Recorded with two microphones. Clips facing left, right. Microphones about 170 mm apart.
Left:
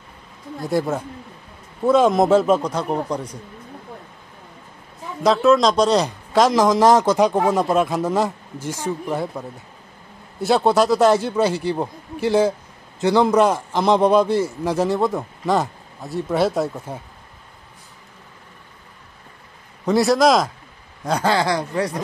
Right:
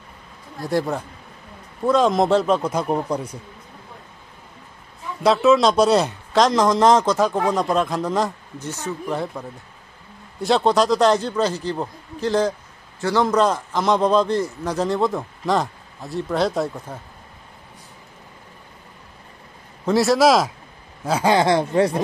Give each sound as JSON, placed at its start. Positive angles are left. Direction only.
{"t": 0.6, "sound": "speech", "side_deg": 0}
{"t": 2.6, "sound": "speech", "side_deg": -10}
{"t": 5.2, "sound": "speech", "side_deg": 0}
{"t": 7.2, "sound": "a man's voice", "side_deg": 15}
{"t": 7.4, "sound": "a man's voice", "side_deg": 5}
{"t": 19.8, "sound": "speech", "side_deg": 0}
{"t": 21.3, "sound": "speech", "side_deg": -20}